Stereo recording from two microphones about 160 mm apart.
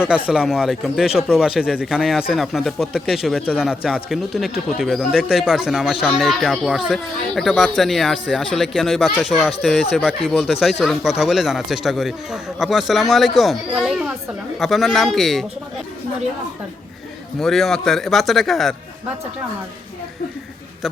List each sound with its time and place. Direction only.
0.0 s speech: 5° right (ahead or behind)
17.4 s speech: centre (ahead or behind)